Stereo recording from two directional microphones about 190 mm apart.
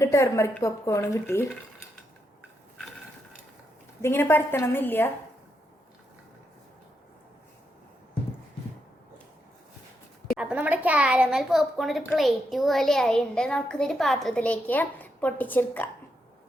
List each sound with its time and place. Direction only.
0.0 s speech: 15° left (ahead or behind)
4.0 s speech: 10° left (ahead or behind)
10.3 s a child's voice: 5° right (ahead or behind)